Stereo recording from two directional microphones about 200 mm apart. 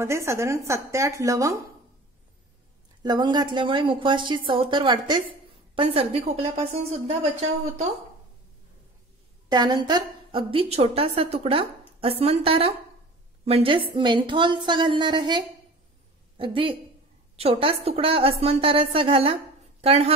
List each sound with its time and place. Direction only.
0.0 s a woman's voice: 15° right (ahead or behind)
3.0 s a woman's voice: 20° right (ahead or behind)
9.5 s a woman's voice: 20° right (ahead or behind)